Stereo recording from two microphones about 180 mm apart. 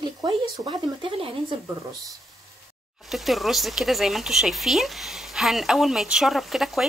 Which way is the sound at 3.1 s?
Centre (ahead or behind).